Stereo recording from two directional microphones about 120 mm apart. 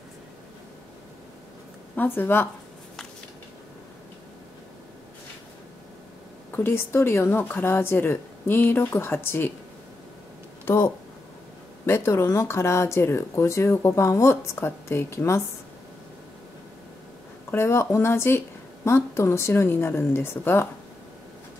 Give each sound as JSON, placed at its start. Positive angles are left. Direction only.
{"t": 2.0, "sound": "speech", "side_deg": 20}
{"t": 6.5, "sound": "speech", "side_deg": 20}
{"t": 10.6, "sound": "a sound", "side_deg": 20}
{"t": 11.8, "sound": "speech", "side_deg": 20}
{"t": 17.5, "sound": "speech", "side_deg": 20}